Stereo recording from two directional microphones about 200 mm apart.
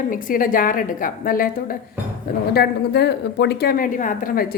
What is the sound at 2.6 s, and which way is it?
A woman's voice, 55° left (ahead or behind).